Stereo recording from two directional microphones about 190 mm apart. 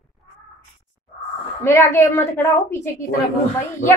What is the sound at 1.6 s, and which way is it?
A woman's voice, 15° left (ahead or behind).